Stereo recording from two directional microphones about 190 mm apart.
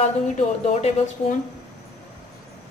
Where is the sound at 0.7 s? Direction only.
40° left (ahead or behind).